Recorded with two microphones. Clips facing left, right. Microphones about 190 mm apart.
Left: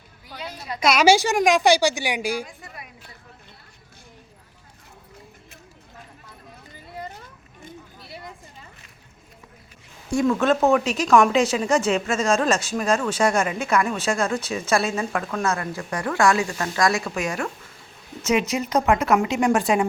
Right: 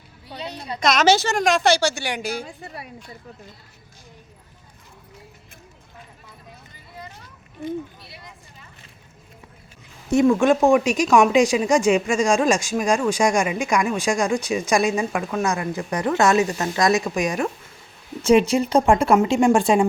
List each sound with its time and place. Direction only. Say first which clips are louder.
0.3 s a sound: right 3 dB; 25° right (ahead or behind)
0.8 s a woman's voice: left 1 dB; 10° left (ahead or behind)
10.1 s speech: right 4 dB; 20° right (ahead or behind)
18.2 s speech: right 6 dB; 30° right (ahead or behind)